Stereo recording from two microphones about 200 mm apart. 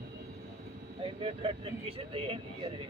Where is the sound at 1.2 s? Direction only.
25° right (ahead or behind).